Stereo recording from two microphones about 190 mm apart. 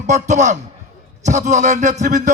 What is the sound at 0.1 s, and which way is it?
A man's voice, 40° right (ahead or behind).